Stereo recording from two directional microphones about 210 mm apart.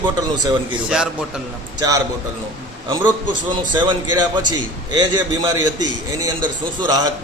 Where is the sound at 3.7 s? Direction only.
20° right (ahead or behind).